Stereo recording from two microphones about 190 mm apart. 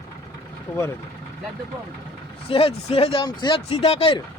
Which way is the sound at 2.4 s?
30° left (ahead or behind).